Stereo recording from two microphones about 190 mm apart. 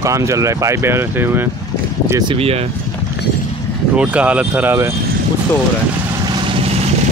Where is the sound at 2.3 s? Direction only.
30° right (ahead or behind).